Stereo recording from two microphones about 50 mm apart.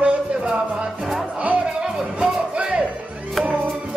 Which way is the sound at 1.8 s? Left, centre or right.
Centre.